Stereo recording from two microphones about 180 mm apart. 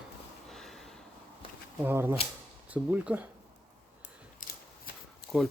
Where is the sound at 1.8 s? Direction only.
10° right (ahead or behind).